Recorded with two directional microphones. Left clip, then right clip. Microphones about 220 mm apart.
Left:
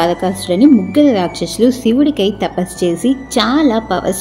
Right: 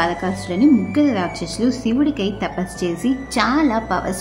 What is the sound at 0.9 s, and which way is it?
A woman's voice, 20° left (ahead or behind).